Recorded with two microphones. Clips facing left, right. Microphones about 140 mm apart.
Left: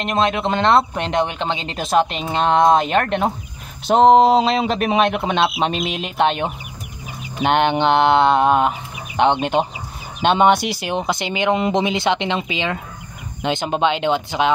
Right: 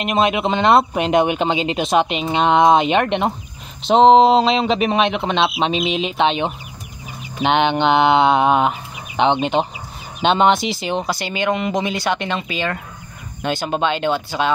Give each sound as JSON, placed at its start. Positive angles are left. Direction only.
{"t": 0.0, "sound": "speech", "side_deg": -10}
{"t": 3.8, "sound": "speech", "side_deg": 5}
{"t": 11.5, "sound": "speech", "side_deg": 25}